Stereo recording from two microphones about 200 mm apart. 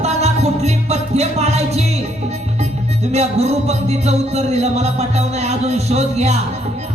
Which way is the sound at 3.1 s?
35° right (ahead or behind).